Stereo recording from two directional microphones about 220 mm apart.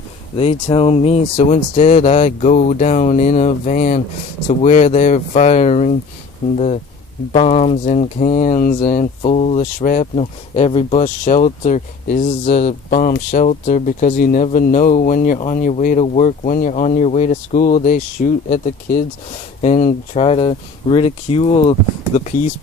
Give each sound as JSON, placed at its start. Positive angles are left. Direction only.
{"t": 0.3, "sound": "speech", "side_deg": 25}